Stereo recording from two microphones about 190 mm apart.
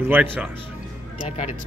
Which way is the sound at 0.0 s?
10° right (ahead or behind).